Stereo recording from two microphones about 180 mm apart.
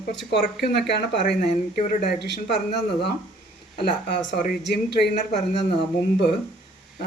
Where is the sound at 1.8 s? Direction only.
45° left (ahead or behind).